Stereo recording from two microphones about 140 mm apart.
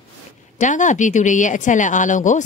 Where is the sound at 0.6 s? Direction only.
60° left (ahead or behind).